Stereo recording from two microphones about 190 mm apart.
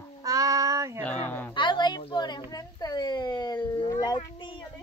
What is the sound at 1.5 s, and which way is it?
Speech, 25° left (ahead or behind).